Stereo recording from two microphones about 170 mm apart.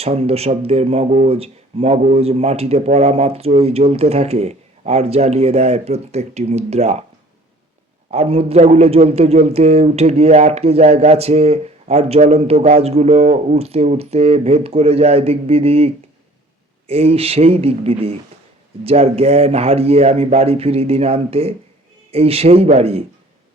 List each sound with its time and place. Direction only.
0.0 s a man's voice: 35° right (ahead or behind)
8.1 s a man's voice: 35° right (ahead or behind)